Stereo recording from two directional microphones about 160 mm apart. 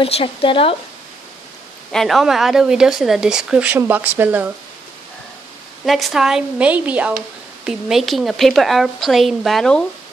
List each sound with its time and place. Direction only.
0.0 s speech: 35° left (ahead or behind)
1.9 s speech: centre (ahead or behind)
5.9 s speech: centre (ahead or behind)